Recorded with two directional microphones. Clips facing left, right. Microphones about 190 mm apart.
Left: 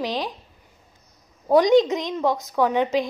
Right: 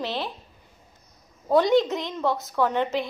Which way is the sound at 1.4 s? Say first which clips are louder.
Left 4 dB; 15° left (ahead or behind).